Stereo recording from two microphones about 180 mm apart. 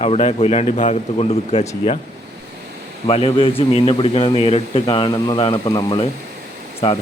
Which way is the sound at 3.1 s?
30° left (ahead or behind).